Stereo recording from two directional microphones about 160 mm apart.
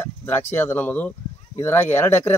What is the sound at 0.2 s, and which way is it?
A man's voice, 15° left (ahead or behind).